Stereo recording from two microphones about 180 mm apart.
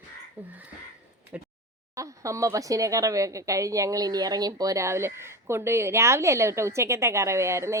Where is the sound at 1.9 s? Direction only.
15° right (ahead or behind).